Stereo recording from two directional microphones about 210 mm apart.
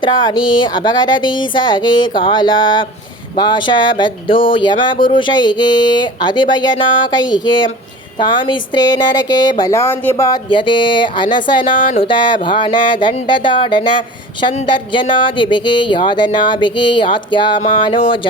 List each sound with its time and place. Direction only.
0.0 s speech: 20° left (ahead or behind)
11.8 s a sound: 35° left (ahead or behind)
12.0 s speech: 20° left (ahead or behind)